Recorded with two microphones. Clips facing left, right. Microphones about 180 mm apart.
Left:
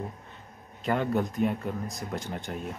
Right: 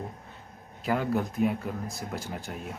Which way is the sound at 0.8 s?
5° right (ahead or behind).